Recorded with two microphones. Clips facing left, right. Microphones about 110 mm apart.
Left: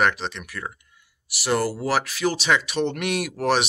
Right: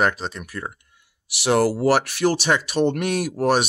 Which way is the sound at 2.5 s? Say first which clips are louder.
Right 3 dB; 40° right (ahead or behind).